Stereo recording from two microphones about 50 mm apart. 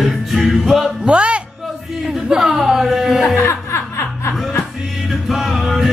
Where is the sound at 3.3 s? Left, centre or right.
Left.